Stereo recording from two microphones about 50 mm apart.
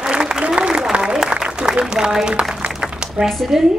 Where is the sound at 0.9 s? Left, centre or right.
Centre.